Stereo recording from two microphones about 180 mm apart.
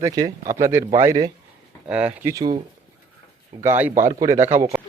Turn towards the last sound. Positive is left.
turn(degrees=-15)  # may be behind; listen again after turning